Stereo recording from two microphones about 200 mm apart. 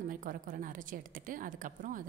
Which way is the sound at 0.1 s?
40° right (ahead or behind).